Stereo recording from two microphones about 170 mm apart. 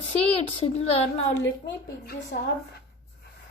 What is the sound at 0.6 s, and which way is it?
Speech, 35° left (ahead or behind).